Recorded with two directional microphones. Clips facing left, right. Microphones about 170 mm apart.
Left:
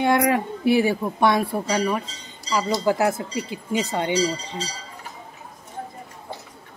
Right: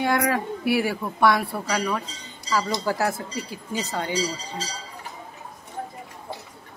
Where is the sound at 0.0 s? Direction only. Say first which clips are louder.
Left 3 dB; 20° left (ahead or behind).